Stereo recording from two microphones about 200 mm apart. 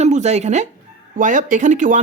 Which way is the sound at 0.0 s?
35° right (ahead or behind).